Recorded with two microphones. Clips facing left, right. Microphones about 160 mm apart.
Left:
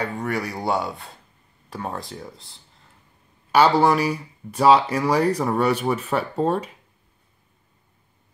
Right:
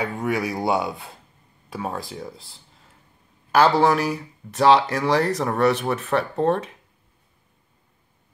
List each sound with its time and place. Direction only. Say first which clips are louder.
0.0 s speech: right 2 dB; 10° right (ahead or behind)